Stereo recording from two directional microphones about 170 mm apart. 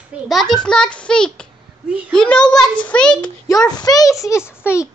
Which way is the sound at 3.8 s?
20° left (ahead or behind).